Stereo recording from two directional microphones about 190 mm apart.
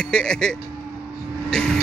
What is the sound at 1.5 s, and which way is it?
Vehicle, 5° left (ahead or behind).